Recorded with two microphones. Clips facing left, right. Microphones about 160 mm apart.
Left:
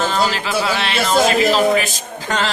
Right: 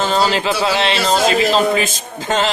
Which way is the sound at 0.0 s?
25° right (ahead or behind).